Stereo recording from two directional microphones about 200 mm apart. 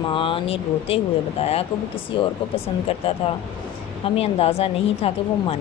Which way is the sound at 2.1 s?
30° left (ahead or behind).